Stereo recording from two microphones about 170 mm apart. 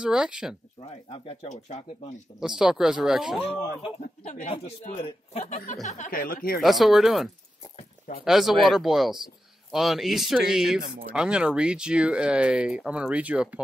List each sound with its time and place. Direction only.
0.0 s speech: 5° right (ahead or behind)
1.1 s a man's voice: 35° left (ahead or behind)
2.4 s speech: 5° right (ahead or behind)
3.4 s a man's voice: 40° left (ahead or behind)
5.9 s speech: 50° left (ahead or behind)
6.6 s speech: centre (ahead or behind)
8.3 s speech: centre (ahead or behind)